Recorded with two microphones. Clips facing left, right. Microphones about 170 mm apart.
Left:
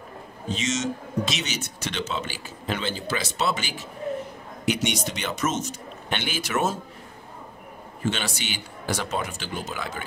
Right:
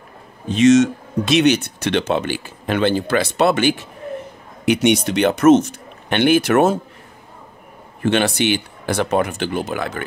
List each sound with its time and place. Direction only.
0.5 s a man's voice: 60° right (ahead or behind)
8.0 s a man's voice: 60° right (ahead or behind)